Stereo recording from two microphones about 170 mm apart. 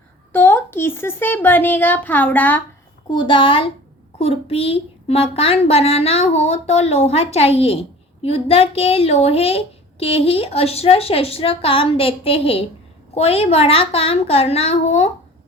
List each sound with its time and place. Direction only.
0.3 s speech: 10° left (ahead or behind)
3.1 s a woman's voice: 30° left (ahead or behind)